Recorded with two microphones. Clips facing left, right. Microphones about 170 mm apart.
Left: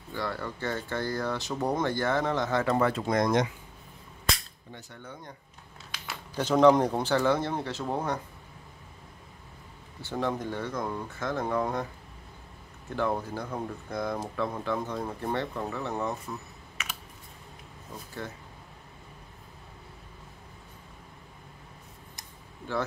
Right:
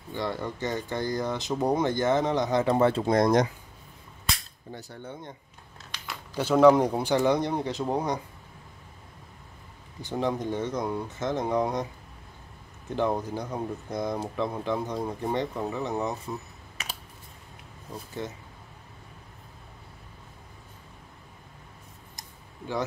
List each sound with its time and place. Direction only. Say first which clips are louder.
0.1 s speech: right 3 dB; 20° right (ahead or behind); by 3.4 s 35° right (ahead or behind)
4.7 s speech: right 4 dB; 35° right (ahead or behind)
6.3 s speech: right 2 dB; 10° right (ahead or behind)
10.0 s speech: right 2 dB; 15° right (ahead or behind)
12.9 s speech: right 2 dB; 20° right (ahead or behind)
16.8 s typing: right 1 dB; 35° right (ahead or behind)